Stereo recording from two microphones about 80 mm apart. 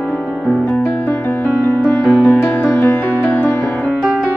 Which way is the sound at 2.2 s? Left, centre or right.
Left.